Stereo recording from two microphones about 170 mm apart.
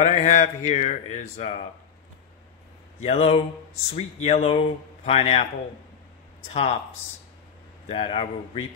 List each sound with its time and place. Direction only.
0.0 s speech: 45° left (ahead or behind)
3.0 s speech: 40° left (ahead or behind)
6.5 s speech: 40° left (ahead or behind)
7.9 s speech: 30° left (ahead or behind)